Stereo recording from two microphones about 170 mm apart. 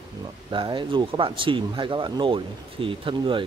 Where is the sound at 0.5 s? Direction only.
30° right (ahead or behind).